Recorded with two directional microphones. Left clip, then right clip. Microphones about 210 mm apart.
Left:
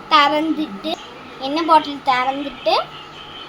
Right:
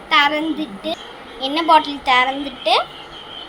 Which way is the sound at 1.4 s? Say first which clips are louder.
Right 1 dB; centre (ahead or behind).